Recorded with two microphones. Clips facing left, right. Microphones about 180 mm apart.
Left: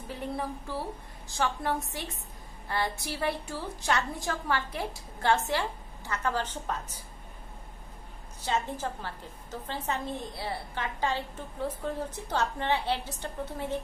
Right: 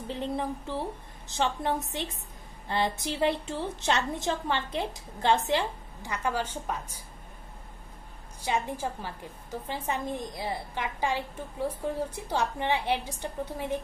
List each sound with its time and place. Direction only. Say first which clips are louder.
0.1 s a woman's voice: right 3 dB; 20° right (ahead or behind)
8.4 s a woman's voice: right 1 dB; 15° right (ahead or behind)